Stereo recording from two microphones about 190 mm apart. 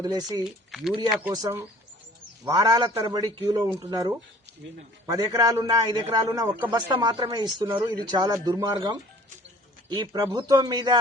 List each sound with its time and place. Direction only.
0.0 s speech: 20° right (ahead or behind)
0.4 s speech: centre (ahead or behind)
1.3 s speech: 20° right (ahead or behind)